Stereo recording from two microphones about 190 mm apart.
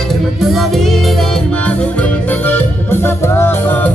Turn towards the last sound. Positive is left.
turn(degrees=10)  # may be behind; listen again after turning